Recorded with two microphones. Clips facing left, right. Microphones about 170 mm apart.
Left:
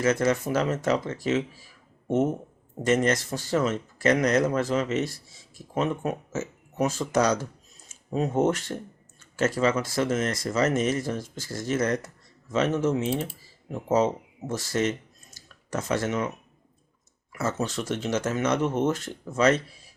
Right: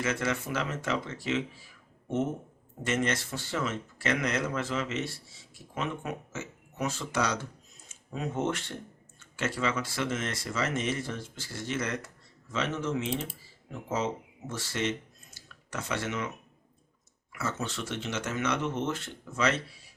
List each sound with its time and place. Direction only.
0.0 s speech: 40° left (ahead or behind)
2.8 s speech: 40° left (ahead or behind)
17.3 s speech: 40° left (ahead or behind)